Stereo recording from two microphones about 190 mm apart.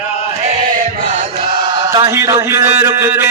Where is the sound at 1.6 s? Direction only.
20° right (ahead or behind).